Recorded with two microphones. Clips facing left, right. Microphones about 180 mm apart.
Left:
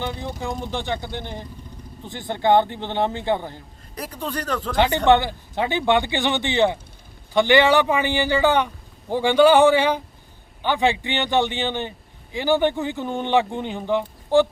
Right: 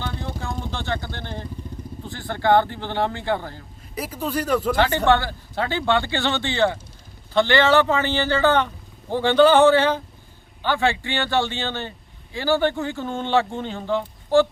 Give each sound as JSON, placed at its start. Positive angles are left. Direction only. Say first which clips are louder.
{"t": 0.0, "sound": "speech", "louder": "left 2 dB", "side_deg": 15}
{"t": 3.9, "sound": "speech", "louder": "right 3 dB", "side_deg": -5}
{"t": 5.0, "sound": "a man's voice", "louder": "left 2 dB", "side_deg": 20}